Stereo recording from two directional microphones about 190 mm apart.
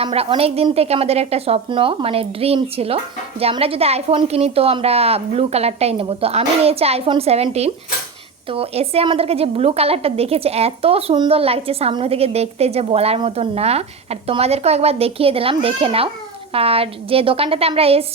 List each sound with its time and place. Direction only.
0.0 s a woman's voice: 30° right (ahead or behind)